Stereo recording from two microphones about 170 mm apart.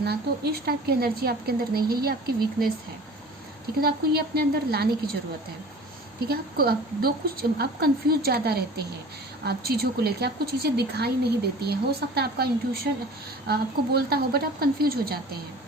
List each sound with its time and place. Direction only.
0.0 s a woman's voice: 70° right (ahead or behind)
3.8 s speech: 65° right (ahead or behind)
6.1 s a woman's voice: 65° right (ahead or behind)